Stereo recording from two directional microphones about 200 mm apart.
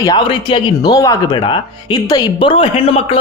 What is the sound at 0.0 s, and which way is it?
Speech, 20° left (ahead or behind).